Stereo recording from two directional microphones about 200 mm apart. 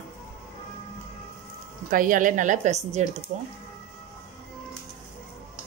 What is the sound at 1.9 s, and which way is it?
Speech, 40° right (ahead or behind).